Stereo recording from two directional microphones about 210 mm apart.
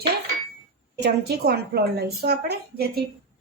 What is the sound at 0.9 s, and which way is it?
A woman's voice, 50° right (ahead or behind).